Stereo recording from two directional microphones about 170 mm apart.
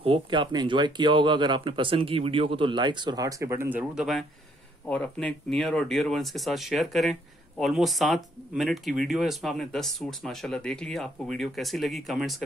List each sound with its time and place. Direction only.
0.0 s speech: 30° right (ahead or behind); by 12.4 s centre (ahead or behind)